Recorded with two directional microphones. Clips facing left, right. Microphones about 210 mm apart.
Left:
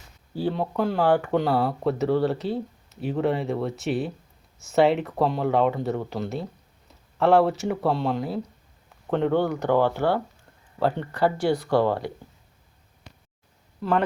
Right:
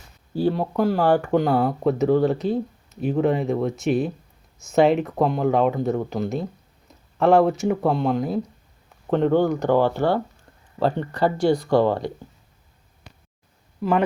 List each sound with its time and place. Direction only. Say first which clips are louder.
0.3 s speech: right 4 dB; 15° right (ahead or behind)
11.3 s speech: right 6 dB; 15° right (ahead or behind)
13.8 s speech: right 3 dB; 10° right (ahead or behind)